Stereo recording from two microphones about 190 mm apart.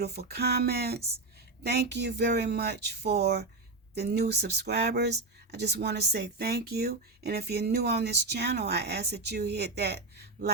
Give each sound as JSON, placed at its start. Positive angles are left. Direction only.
{"t": 0.0, "sound": "speech", "side_deg": -55}